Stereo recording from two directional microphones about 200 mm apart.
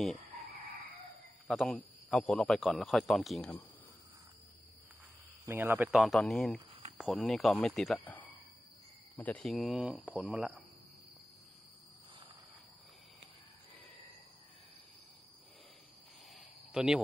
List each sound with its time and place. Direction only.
1.5 s speech: centre (ahead or behind)
5.4 s speech: 10° right (ahead or behind)
6.7 s cricket: 30° right (ahead or behind)
7.2 s speech: centre (ahead or behind)
16.3 s a sound: 5° right (ahead or behind)